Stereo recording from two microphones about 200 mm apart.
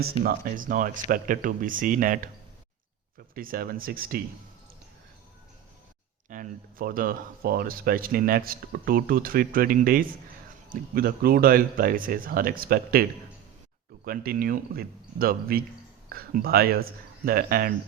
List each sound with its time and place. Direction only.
0.2 s speech: 45° right (ahead or behind)
3.3 s speech: 45° right (ahead or behind)
6.2 s speech: 40° right (ahead or behind)